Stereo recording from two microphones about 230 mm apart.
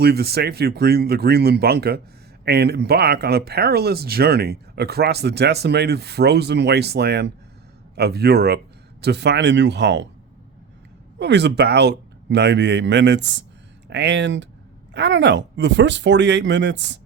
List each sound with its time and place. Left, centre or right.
0.0 s speech: right
11.2 s speech: right